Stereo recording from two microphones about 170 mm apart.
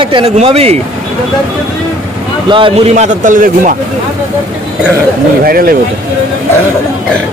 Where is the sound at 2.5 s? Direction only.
35° right (ahead or behind); by 3.7 s 50° right (ahead or behind).